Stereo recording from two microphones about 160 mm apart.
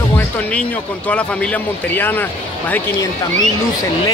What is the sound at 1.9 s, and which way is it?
Speech, 10° left (ahead or behind).